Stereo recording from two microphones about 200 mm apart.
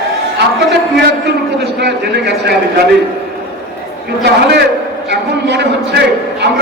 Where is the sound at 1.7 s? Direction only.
55° right (ahead or behind).